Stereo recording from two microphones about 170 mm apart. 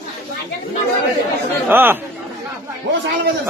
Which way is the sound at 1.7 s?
10° right (ahead or behind).